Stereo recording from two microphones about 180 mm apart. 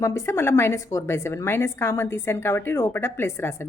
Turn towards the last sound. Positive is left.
turn(degrees=15)  # may be behind; listen again after turning